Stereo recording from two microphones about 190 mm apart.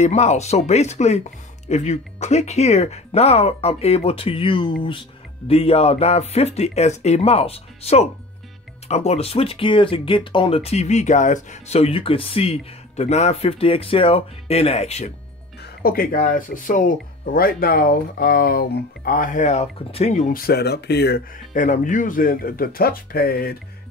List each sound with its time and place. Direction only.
0.0 s speech: 35° left (ahead or behind)
15.6 s speech: 50° left (ahead or behind)
21.5 s speech: 40° left (ahead or behind)